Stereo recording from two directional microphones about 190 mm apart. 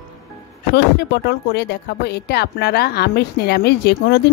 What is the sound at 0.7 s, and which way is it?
A woman's voice, 60° left (ahead or behind).